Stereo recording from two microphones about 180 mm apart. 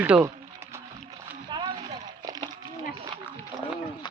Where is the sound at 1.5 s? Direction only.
25° right (ahead or behind).